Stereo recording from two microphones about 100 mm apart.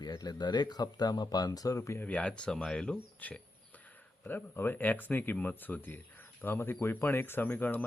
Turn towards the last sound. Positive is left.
turn(degrees=20)  # may be behind; listen again after turning